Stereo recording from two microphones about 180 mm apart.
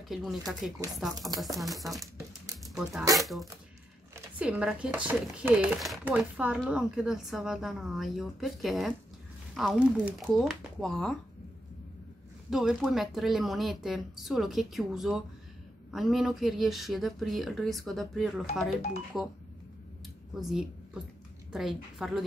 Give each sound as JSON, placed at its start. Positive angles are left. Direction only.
{"t": 0.1, "sound": "speech", "side_deg": 0}
{"t": 12.4, "sound": "speech", "side_deg": 0}
{"t": 20.3, "sound": "a woman's voice", "side_deg": 0}